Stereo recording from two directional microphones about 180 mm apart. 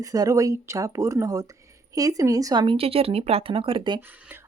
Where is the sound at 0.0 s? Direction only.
20° right (ahead or behind).